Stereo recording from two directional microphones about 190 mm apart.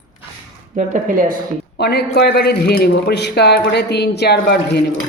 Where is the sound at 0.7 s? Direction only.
45° right (ahead or behind).